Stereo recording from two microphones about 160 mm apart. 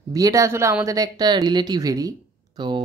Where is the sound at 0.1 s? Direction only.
20° right (ahead or behind).